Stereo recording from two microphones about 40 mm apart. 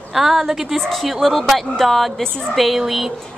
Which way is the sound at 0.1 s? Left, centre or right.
Centre.